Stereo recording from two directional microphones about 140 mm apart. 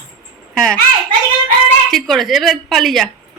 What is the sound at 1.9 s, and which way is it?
Speech, centre (ahead or behind).